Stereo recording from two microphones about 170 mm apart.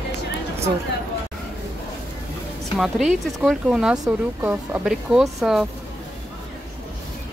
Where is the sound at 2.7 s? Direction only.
Centre (ahead or behind).